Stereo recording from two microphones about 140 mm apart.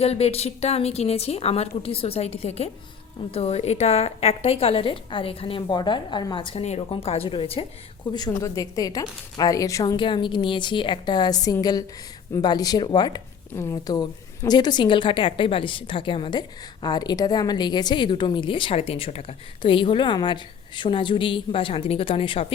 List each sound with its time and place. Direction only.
0.0 s a woman's voice: 45° left (ahead or behind)
8.1 s a woman's voice: 25° left (ahead or behind); by 22.5 s 40° left (ahead or behind)